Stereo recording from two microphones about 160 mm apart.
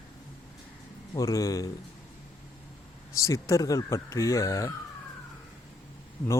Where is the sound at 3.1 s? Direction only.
20° left (ahead or behind).